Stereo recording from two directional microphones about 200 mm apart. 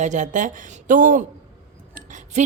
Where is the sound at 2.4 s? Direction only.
35° right (ahead or behind).